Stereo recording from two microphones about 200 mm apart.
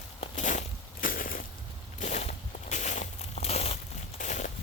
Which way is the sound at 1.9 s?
35° left (ahead or behind).